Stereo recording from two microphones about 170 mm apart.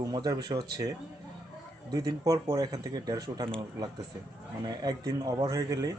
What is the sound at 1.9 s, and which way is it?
Speech, 20° right (ahead or behind).